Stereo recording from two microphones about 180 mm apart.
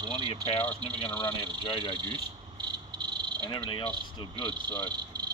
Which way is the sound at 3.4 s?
25° left (ahead or behind).